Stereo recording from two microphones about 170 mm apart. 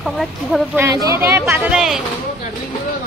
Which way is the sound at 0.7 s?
15° right (ahead or behind).